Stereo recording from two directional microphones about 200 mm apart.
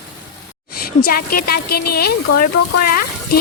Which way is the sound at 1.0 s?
50° left (ahead or behind).